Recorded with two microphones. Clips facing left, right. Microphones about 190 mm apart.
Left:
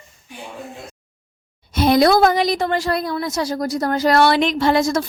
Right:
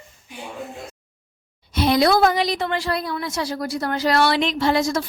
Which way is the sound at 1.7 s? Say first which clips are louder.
Left 3 dB; 50° left (ahead or behind).